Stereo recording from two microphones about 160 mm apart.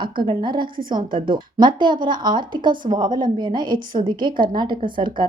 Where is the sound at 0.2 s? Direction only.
30° right (ahead or behind).